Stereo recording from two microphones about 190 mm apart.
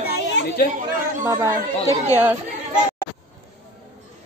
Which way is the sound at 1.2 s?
15° right (ahead or behind).